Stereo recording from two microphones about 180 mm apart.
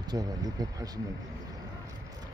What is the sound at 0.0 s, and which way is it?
Speech, 20° right (ahead or behind).